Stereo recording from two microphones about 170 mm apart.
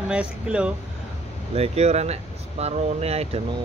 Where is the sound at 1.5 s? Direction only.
35° right (ahead or behind).